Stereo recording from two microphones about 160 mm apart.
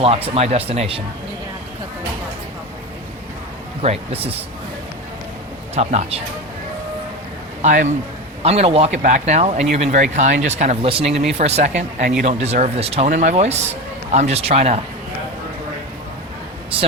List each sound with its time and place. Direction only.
0.0 s speech: 40° right (ahead or behind)
3.8 s speech: 40° right (ahead or behind)
5.7 s speech: 45° right (ahead or behind)
7.6 s speech: 50° right (ahead or behind)
8.4 s speech: 40° right (ahead or behind)
9.0 s speech: 50° right (ahead or behind)
13.1 s speech: 50° right (ahead or behind)
16.7 s speech: 35° right (ahead or behind)